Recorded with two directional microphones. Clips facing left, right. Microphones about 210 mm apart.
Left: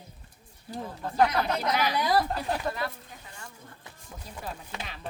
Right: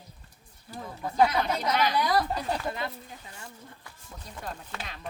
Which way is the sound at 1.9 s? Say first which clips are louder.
Left 2 dB; 25° left (ahead or behind).